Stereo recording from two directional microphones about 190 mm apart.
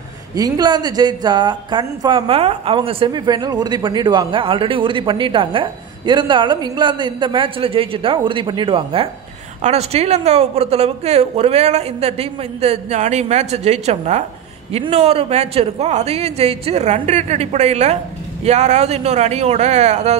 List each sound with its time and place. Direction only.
0.4 s a woman's voice: 20° right (ahead or behind)